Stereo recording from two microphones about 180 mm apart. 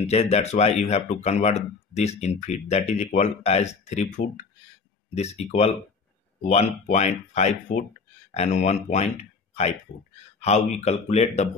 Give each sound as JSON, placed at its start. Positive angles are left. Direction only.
{"t": 0.0, "sound": "speech", "side_deg": 35}